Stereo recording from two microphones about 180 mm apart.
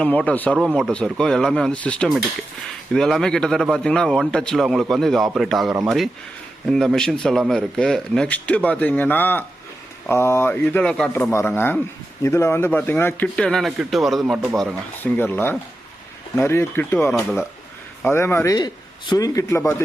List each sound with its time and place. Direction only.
0.0 s a man's voice: 5° left (ahead or behind)
18.1 s speech: 15° left (ahead or behind)